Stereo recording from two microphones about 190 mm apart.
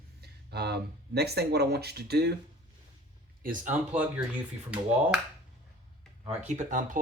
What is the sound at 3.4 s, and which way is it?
Speech, 45° right (ahead or behind).